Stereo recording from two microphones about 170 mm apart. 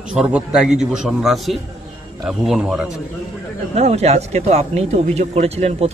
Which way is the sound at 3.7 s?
40° right (ahead or behind).